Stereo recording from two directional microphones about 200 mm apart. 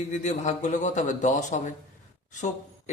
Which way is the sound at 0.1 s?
35° left (ahead or behind).